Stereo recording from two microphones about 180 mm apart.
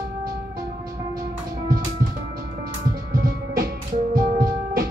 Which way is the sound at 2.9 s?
55° right (ahead or behind).